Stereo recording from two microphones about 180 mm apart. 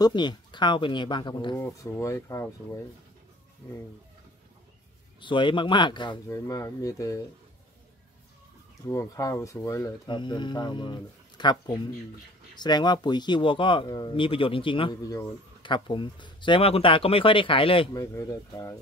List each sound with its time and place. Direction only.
0.0 s speech: 25° left (ahead or behind)
5.2 s speech: 25° left (ahead or behind)
8.8 s speech: 20° left (ahead or behind)
18.1 s speech: 15° left (ahead or behind)